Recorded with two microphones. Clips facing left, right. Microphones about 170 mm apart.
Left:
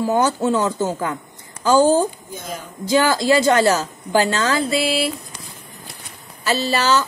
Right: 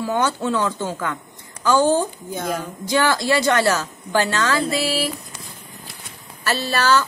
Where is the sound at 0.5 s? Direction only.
25° left (ahead or behind).